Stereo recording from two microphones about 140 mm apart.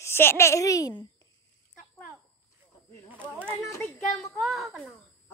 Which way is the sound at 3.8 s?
Centre (ahead or behind).